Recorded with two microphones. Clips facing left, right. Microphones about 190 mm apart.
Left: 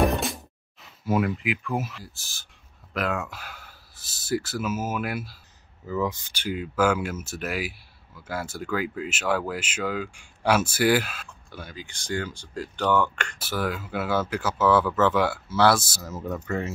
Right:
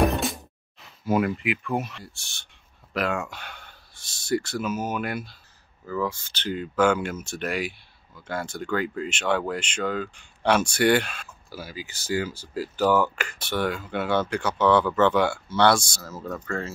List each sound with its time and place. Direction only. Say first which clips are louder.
0.0 s music: even; centre (ahead or behind)
1.0 s speech: right 1 dB; centre (ahead or behind)
5.9 s speech: left 1 dB; 20° left (ahead or behind); by 16.0 s 5° left (ahead or behind)
16.0 s speech: left 2 dB; 20° left (ahead or behind)